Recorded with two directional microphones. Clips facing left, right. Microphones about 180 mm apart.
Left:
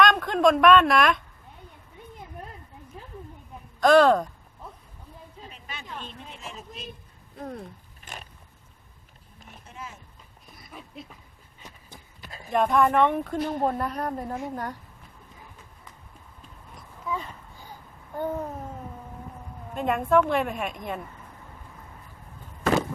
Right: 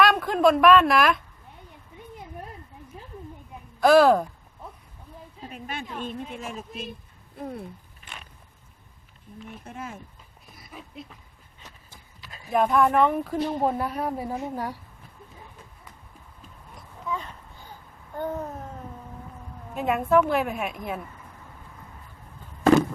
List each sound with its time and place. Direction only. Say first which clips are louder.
0.0 s a woman's voice: right 1 dB; 5° right (ahead or behind)
3.8 s speech: right 1 dB; 5° right (ahead or behind)
5.5 s a sound: right 10 dB; 50° right (ahead or behind)
6.0 s speech: right 8 dB; 50° right (ahead or behind)
7.3 s speech: right 1 dB; 5° right (ahead or behind)
8.1 s vehicle: left 3 dB; 40° left (ahead or behind)
9.6 s speech: right 4 dB; 55° right (ahead or behind)
10.6 s a sound: right 1 dB; centre (ahead or behind)
12.5 s speech: right 1 dB; 5° right (ahead or behind)
16.7 s a sound: even; 5° left (ahead or behind)
19.7 s speech: right 1 dB; 5° right (ahead or behind)